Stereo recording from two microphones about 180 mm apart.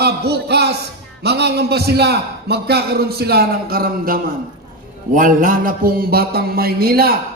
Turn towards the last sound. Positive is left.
turn(degrees=-55)  # may be behind; listen again after turning